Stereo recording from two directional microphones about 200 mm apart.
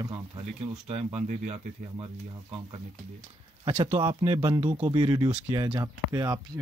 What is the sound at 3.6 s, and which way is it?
Speech, 30° right (ahead or behind).